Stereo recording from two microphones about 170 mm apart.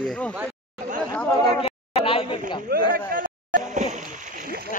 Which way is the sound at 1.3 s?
20° left (ahead or behind).